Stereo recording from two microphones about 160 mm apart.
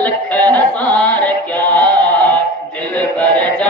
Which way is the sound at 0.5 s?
10° left (ahead or behind).